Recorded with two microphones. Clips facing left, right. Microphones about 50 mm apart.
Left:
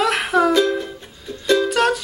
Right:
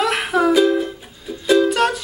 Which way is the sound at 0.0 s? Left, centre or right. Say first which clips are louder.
Even; centre.